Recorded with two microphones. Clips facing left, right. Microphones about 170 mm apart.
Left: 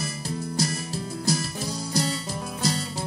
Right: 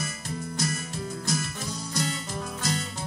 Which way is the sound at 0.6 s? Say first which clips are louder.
Left 2 dB; 35° left (ahead or behind).